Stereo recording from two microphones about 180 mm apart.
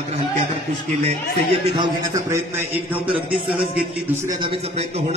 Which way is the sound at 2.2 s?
15° right (ahead or behind).